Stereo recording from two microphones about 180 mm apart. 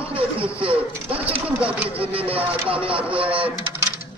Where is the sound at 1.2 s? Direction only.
5° right (ahead or behind).